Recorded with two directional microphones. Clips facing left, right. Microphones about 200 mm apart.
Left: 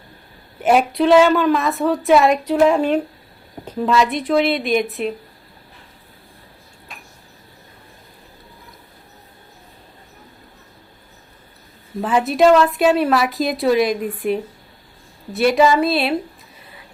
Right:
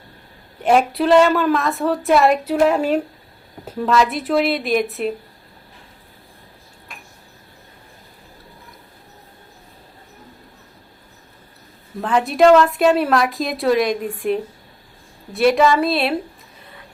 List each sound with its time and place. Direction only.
0.6 s a woman's voice: 5° left (ahead or behind)
11.9 s a woman's voice: 5° left (ahead or behind)